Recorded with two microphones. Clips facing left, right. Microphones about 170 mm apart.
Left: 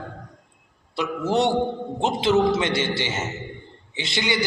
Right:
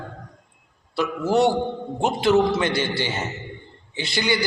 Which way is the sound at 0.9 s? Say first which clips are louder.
Right 2 dB; 20° left (ahead or behind).